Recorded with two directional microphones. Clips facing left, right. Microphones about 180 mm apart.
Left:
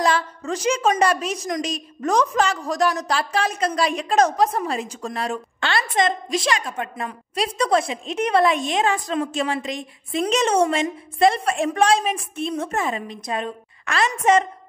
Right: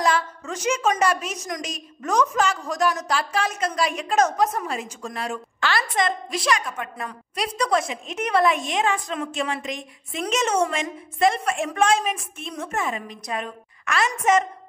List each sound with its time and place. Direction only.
0.0 s a woman's voice: 35° left (ahead or behind)